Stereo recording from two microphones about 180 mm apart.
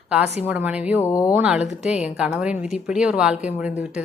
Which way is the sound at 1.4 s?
5° right (ahead or behind).